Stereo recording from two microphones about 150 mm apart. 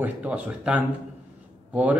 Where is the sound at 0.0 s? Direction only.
10° right (ahead or behind).